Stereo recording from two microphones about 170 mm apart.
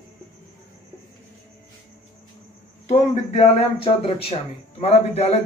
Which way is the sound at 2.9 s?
40° left (ahead or behind).